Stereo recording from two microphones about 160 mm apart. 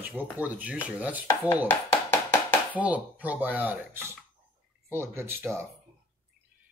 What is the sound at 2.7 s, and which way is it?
Speech, 10° right (ahead or behind).